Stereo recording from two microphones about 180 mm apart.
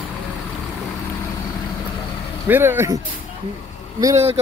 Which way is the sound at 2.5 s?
10° right (ahead or behind).